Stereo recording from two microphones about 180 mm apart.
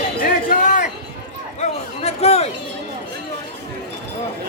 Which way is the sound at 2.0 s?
35° left (ahead or behind).